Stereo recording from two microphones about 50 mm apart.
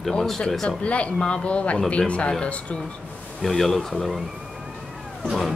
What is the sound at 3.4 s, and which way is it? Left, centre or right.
Speech, centre.